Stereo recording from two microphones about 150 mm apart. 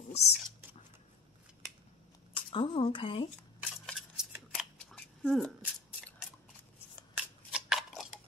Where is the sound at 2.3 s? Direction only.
35° left (ahead or behind).